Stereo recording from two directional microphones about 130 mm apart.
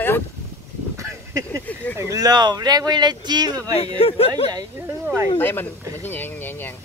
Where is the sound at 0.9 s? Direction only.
25° right (ahead or behind).